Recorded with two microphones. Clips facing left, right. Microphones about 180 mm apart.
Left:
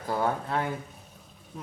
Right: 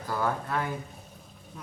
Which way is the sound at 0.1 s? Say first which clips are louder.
Left 2 dB; 25° left (ahead or behind).